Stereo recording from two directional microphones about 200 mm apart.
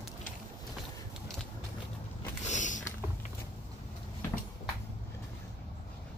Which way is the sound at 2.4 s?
40° left (ahead or behind).